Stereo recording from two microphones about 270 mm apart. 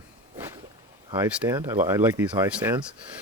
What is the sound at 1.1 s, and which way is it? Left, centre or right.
Speech, centre.